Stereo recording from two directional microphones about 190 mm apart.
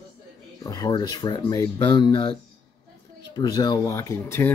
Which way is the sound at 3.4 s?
20° left (ahead or behind).